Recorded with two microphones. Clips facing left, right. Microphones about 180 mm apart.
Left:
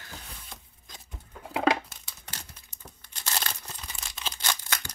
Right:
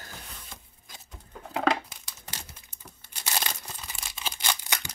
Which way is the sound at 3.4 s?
10° right (ahead or behind).